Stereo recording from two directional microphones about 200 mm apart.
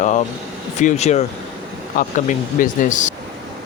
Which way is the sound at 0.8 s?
35° left (ahead or behind).